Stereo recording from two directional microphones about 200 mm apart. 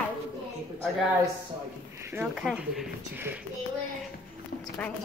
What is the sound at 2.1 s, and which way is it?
Speech, 5° right (ahead or behind).